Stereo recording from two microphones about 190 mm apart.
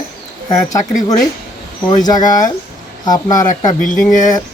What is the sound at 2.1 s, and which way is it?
Speech, 40° left (ahead or behind).